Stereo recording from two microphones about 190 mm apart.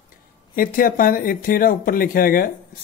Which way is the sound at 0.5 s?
50° left (ahead or behind).